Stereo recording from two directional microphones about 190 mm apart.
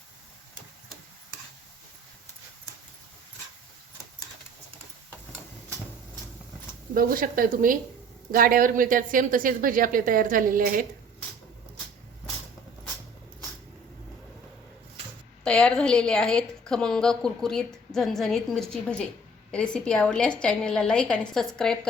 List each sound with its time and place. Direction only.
6.9 s speech: 50° right (ahead or behind)
15.4 s a woman's voice: 5° left (ahead or behind)